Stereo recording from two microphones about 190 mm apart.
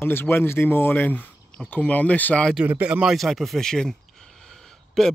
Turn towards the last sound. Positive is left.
turn(degrees=0)  # may be behind; listen again after turning